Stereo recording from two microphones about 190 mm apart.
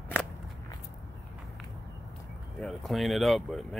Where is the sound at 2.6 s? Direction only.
Centre (ahead or behind).